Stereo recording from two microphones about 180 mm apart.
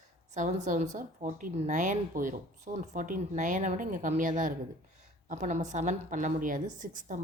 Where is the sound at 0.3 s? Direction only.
45° right (ahead or behind).